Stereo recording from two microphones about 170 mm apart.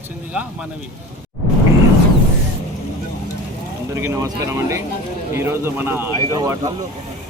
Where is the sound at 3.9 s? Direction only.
15° right (ahead or behind).